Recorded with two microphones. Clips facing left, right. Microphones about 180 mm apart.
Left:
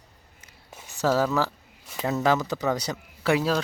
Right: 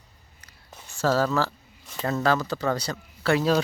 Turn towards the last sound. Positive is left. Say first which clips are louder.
# right 3 dB
turn(degrees=0)  # may be behind; listen again after turning